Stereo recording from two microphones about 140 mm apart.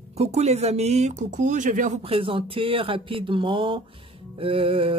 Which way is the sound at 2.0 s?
40° right (ahead or behind).